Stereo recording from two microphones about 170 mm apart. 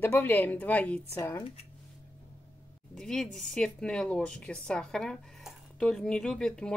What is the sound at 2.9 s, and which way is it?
A woman's voice, 5° left (ahead or behind).